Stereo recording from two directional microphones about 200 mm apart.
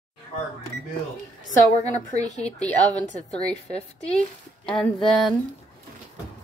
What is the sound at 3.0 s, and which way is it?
Speech, 5° left (ahead or behind).